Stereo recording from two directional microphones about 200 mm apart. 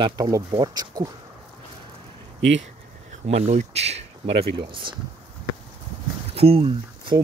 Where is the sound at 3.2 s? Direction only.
30° right (ahead or behind).